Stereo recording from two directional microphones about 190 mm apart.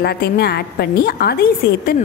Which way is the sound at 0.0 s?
55° left (ahead or behind).